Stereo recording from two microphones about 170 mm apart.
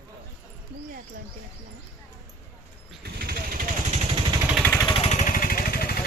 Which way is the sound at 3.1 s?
65° right (ahead or behind).